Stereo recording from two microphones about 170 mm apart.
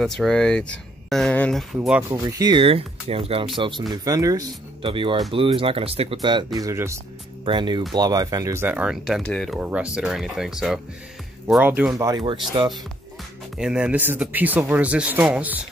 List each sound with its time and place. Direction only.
0.0 s speech: centre (ahead or behind)
2.0 s speech: 20° right (ahead or behind)
7.4 s speech: 25° right (ahead or behind)
8.6 s speech: 5° right (ahead or behind)
11.9 s speech: 20° right (ahead or behind)
13.6 s speech: 5° right (ahead or behind)